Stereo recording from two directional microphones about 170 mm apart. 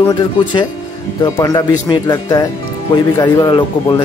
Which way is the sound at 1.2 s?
20° left (ahead or behind).